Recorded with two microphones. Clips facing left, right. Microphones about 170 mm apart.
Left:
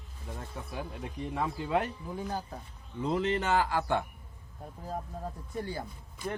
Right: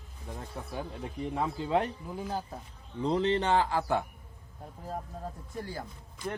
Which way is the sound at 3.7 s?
5° right (ahead or behind).